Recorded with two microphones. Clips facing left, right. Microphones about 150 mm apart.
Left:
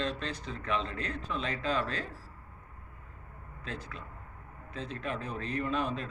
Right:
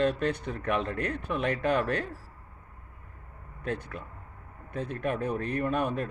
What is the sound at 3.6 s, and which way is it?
Speech, 60° right (ahead or behind).